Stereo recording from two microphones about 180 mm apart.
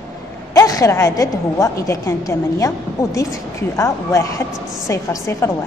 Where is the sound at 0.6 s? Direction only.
20° left (ahead or behind).